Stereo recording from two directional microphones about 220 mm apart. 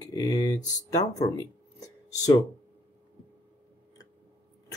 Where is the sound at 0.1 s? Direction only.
15° left (ahead or behind).